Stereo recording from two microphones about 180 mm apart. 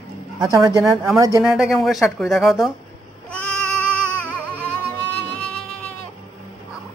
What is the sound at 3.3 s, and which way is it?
Music, 5° left (ahead or behind).